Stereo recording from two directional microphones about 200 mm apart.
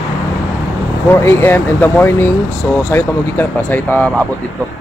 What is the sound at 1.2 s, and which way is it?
Speech, 10° left (ahead or behind).